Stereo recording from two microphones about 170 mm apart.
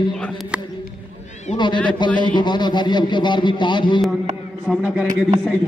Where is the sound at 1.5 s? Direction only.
25° left (ahead or behind).